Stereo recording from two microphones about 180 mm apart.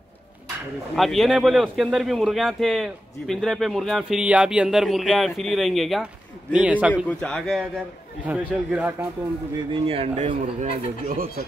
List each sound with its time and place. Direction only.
0.9 s a man's voice: centre (ahead or behind)
7.1 s a man's voice: 5° left (ahead or behind)
9.7 s speech: 30° right (ahead or behind)